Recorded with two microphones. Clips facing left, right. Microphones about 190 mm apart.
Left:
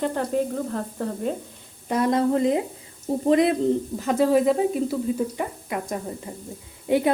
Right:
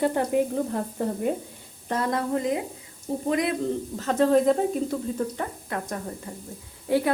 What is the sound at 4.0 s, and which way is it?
Speech, 10° left (ahead or behind).